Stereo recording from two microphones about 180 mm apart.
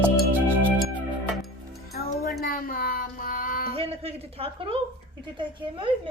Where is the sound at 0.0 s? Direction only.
10° right (ahead or behind).